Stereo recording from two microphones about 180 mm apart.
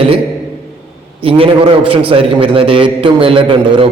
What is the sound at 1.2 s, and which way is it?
Speech, 30° right (ahead or behind).